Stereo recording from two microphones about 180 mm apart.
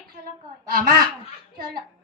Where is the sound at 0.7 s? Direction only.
55° right (ahead or behind).